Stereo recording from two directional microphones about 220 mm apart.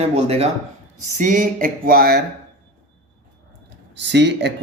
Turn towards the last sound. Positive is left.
turn(degrees=-50)  # may be behind; listen again after turning